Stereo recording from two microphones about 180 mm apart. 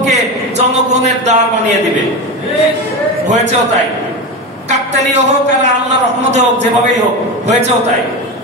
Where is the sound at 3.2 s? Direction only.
40° right (ahead or behind).